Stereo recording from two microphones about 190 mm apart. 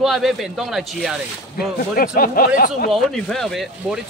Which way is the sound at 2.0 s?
50° left (ahead or behind).